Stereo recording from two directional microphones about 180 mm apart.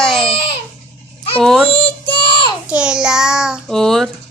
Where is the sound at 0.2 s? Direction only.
30° left (ahead or behind).